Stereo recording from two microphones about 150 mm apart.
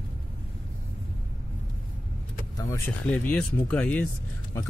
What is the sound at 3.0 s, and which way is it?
Speech, 10° left (ahead or behind).